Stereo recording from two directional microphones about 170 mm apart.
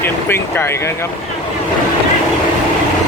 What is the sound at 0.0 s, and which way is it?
Speech, 15° left (ahead or behind).